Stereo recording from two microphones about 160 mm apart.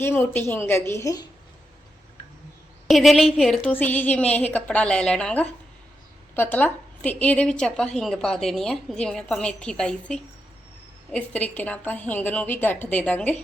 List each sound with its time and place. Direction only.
0.0 s a woman's voice: 10° left (ahead or behind)
2.8 s a woman's voice: centre (ahead or behind)